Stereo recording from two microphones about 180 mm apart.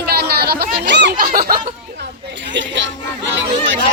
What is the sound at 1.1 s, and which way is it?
Snicker, 55° right (ahead or behind).